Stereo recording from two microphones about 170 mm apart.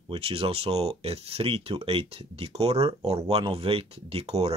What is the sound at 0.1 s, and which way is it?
Speech, 35° right (ahead or behind).